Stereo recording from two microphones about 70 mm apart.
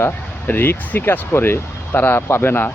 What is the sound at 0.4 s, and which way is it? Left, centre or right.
Speech, left.